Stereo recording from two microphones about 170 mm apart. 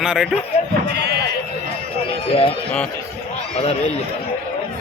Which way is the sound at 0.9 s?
75° right (ahead or behind).